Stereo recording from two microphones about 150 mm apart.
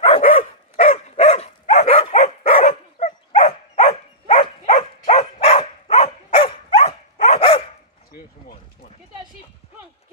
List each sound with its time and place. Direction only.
0.0 s dog: 40° left (ahead or behind)
5.2 s dog: 40° left (ahead or behind)
8.1 s a sound: 75° left (ahead or behind)